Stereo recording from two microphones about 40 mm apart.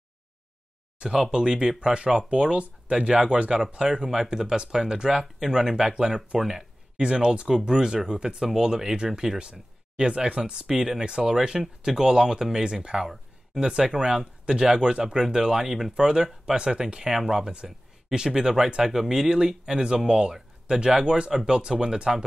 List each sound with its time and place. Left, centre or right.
0.9 s speech: centre
20.3 s a sound: centre
20.8 s speech: centre